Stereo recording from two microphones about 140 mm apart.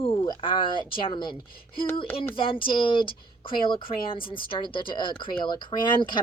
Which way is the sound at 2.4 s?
35° left (ahead or behind).